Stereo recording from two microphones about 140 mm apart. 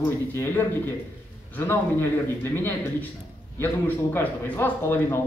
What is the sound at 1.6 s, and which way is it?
A man's voice, 15° left (ahead or behind).